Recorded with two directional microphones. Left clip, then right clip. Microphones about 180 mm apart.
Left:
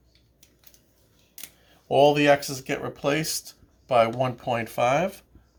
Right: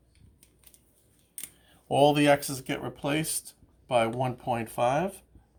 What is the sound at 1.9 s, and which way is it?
Speech, centre (ahead or behind).